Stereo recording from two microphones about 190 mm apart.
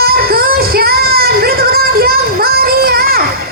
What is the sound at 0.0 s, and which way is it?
Music, 55° right (ahead or behind).